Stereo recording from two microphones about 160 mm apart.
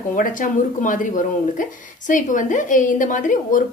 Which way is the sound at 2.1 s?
55° left (ahead or behind).